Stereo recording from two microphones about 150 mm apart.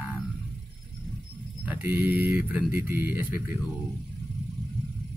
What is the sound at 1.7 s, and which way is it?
A man's voice, 15° right (ahead or behind).